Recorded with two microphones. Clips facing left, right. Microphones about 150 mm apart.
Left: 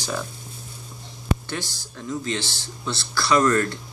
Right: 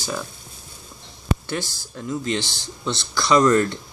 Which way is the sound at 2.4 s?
20° right (ahead or behind).